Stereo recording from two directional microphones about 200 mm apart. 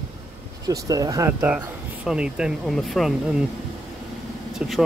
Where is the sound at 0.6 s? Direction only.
20° right (ahead or behind); by 3.1 s centre (ahead or behind).